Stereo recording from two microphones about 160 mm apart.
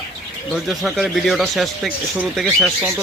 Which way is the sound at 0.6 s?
Centre (ahead or behind).